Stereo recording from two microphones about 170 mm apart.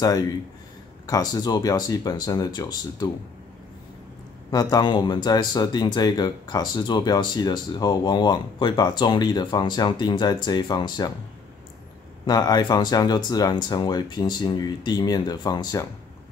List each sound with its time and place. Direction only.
1.0 s speech: 20° left (ahead or behind)
4.5 s speech: 20° left (ahead or behind)
12.3 s speech: 25° left (ahead or behind)